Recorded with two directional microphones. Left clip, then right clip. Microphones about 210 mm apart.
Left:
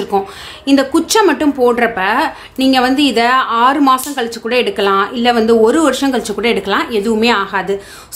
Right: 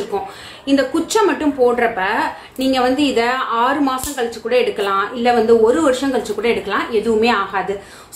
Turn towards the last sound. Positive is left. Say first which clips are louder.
# left 2 dB
turn(degrees=50)  # may be behind; listen again after turning